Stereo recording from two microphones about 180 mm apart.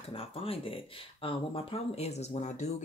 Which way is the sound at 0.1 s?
30° left (ahead or behind).